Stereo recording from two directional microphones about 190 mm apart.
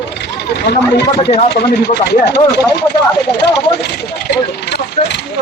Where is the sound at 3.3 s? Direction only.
60° left (ahead or behind).